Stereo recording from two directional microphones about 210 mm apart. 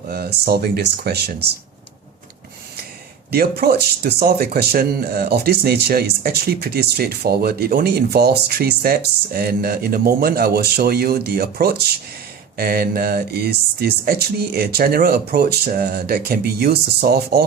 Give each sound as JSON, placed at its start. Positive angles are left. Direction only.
{"t": 0.1, "sound": "speech", "side_deg": -50}
{"t": 3.3, "sound": "speech", "side_deg": -50}